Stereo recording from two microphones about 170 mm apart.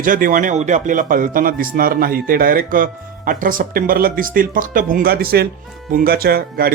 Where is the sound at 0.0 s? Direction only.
55° right (ahead or behind).